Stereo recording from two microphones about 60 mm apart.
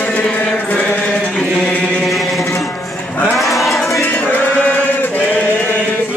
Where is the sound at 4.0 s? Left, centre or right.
Left.